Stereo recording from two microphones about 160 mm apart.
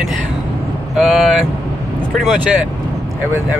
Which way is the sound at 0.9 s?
5° right (ahead or behind).